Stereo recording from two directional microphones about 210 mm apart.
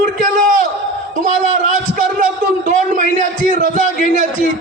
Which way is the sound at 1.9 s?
40° right (ahead or behind).